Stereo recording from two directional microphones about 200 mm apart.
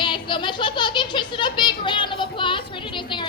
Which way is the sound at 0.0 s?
25° left (ahead or behind).